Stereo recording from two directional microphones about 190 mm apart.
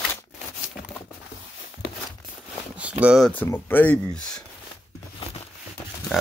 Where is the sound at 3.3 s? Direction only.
10° left (ahead or behind).